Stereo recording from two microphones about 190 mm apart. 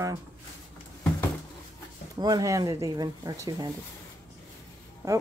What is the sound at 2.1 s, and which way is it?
Speech, 20° right (ahead or behind).